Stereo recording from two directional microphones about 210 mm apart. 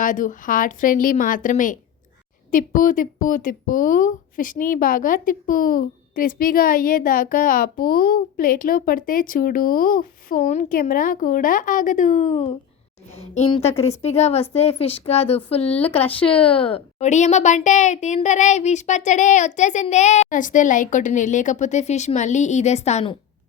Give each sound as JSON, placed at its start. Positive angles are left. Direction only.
{"t": 0.0, "sound": "a woman's voice", "side_deg": 40}
{"t": 15.7, "sound": "speech", "side_deg": 10}
{"t": 16.0, "sound": "a woman's voice", "side_deg": 25}